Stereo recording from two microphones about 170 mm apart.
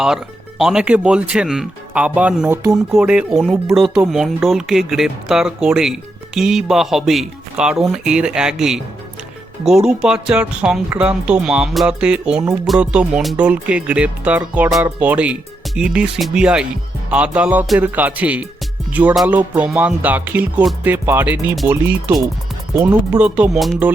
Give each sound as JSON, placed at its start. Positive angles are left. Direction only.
{"t": 0.6, "sound": "speech", "side_deg": -5}
{"t": 12.6, "sound": "music", "side_deg": -5}
{"t": 14.9, "sound": "speech", "side_deg": -10}
{"t": 17.1, "sound": "music", "side_deg": -5}
{"t": 22.7, "sound": "speech", "side_deg": -20}
{"t": 23.1, "sound": "music", "side_deg": -5}